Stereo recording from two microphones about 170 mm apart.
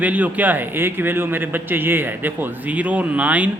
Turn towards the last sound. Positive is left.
turn(degrees=-10)  # may be behind; listen again after turning